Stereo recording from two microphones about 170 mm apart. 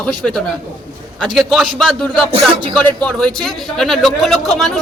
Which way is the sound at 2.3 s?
35° right (ahead or behind).